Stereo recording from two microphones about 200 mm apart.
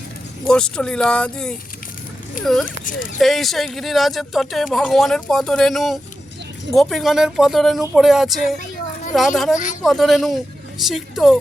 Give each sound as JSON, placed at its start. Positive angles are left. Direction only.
{"t": 0.4, "sound": "speech", "side_deg": 5}
{"t": 8.5, "sound": "a sound", "side_deg": 40}
{"t": 9.1, "sound": "speech", "side_deg": 0}